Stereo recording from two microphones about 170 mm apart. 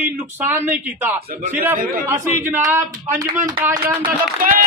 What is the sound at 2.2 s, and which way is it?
Speech, 15° right (ahead or behind).